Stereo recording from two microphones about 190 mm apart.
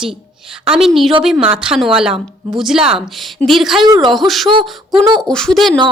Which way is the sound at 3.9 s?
20° right (ahead or behind).